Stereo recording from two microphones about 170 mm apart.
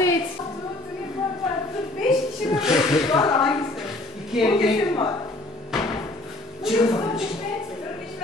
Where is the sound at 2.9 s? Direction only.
20° left (ahead or behind).